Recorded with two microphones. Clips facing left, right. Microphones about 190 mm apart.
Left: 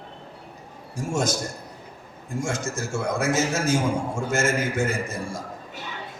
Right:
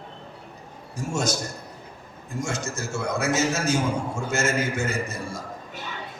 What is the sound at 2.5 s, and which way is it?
A man's voice, 55° left (ahead or behind).